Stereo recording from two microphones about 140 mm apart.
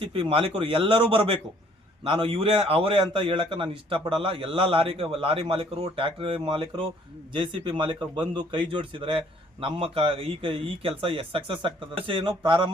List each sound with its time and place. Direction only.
0.0 s a man's voice: 40° right (ahead or behind)